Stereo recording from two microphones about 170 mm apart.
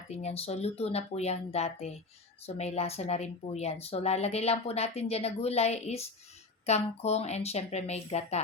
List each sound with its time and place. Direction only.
0.1 s a woman's voice: 40° left (ahead or behind)